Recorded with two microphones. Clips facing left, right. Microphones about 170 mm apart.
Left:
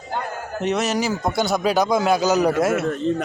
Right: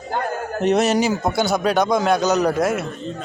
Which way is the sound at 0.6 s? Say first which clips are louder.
Right 5 dB; 35° right (ahead or behind).